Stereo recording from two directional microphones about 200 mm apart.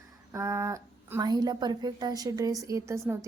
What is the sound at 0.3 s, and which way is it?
A woman's voice, 15° right (ahead or behind).